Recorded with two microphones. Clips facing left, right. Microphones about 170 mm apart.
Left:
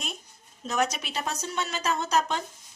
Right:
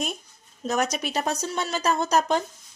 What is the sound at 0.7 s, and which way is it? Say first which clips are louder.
A woman's voice: right 3 dB; 45° right (ahead or behind).